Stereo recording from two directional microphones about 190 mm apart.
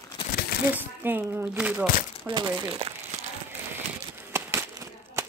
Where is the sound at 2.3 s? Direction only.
25° right (ahead or behind).